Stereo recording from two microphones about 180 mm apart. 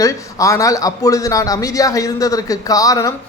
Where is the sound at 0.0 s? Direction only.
20° left (ahead or behind).